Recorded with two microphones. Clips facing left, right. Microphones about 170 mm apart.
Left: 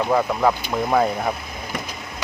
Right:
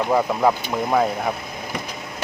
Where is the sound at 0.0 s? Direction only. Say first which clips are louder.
Even; 10° right (ahead or behind).